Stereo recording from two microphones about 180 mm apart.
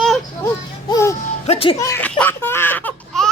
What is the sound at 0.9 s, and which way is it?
Music, 15° left (ahead or behind).